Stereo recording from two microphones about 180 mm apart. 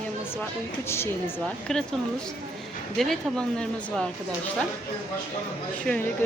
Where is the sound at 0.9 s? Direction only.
15° left (ahead or behind).